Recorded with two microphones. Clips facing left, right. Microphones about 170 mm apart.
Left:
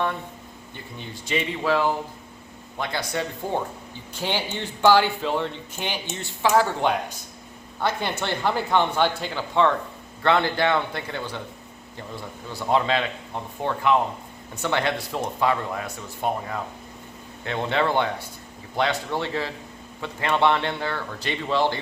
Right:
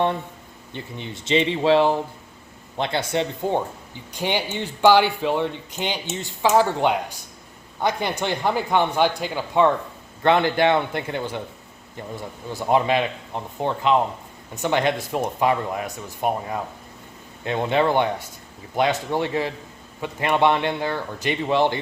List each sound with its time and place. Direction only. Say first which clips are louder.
0.7 s speech: right 5 dB; 20° right (ahead or behind)
12.7 s speech: right 3 dB; 15° right (ahead or behind)
17.4 s speech: right 3 dB; 15° right (ahead or behind)